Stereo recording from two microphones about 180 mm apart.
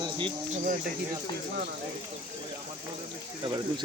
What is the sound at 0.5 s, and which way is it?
Speech, 45° right (ahead or behind).